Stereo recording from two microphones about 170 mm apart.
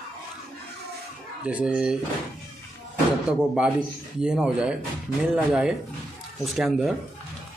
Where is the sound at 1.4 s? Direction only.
5° right (ahead or behind).